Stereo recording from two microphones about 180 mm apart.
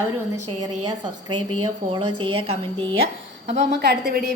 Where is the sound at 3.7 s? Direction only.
65° right (ahead or behind).